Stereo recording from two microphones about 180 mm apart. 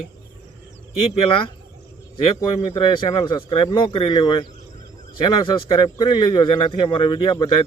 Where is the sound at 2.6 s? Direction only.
25° left (ahead or behind).